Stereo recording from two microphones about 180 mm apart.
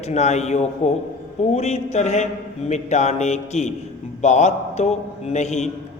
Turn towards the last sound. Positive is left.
turn(degrees=40)  # may be behind; listen again after turning